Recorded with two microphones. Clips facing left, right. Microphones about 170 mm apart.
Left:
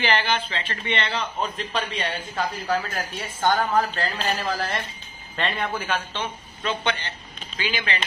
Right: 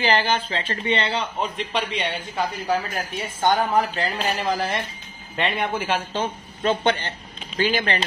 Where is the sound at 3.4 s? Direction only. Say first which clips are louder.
Right 1 dB; 15° right (ahead or behind).